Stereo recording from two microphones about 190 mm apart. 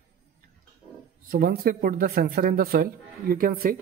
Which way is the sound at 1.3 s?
50° right (ahead or behind).